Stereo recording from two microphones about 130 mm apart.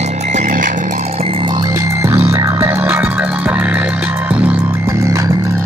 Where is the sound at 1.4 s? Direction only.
35° right (ahead or behind); by 3.8 s 10° right (ahead or behind).